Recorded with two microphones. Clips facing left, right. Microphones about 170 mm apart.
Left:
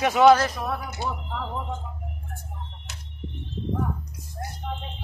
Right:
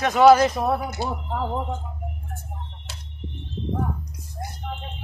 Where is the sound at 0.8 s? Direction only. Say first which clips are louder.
Right 3 dB; 35° right (ahead or behind).